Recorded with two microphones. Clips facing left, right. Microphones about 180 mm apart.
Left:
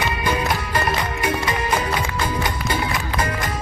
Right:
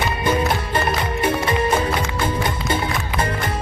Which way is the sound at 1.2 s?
30° right (ahead or behind).